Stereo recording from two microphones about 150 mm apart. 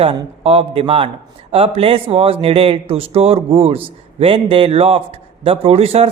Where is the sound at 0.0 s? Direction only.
40° right (ahead or behind).